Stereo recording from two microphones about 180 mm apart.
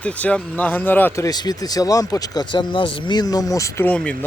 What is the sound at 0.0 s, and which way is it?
Speech, 5° left (ahead or behind).